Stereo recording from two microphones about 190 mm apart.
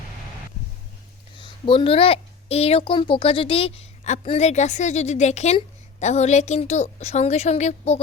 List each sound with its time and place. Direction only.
1.4 s a woman's voice: 25° left (ahead or behind)